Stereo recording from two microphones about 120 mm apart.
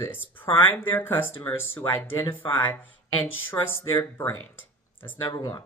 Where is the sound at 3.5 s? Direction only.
20° left (ahead or behind).